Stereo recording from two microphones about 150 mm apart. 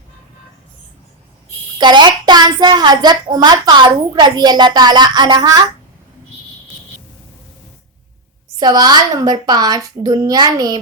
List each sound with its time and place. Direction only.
1.8 s a woman's voice: 30° right (ahead or behind)
8.5 s a woman's voice: 25° right (ahead or behind)